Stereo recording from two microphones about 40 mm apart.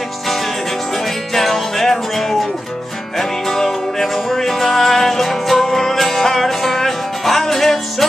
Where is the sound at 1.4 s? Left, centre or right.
Centre.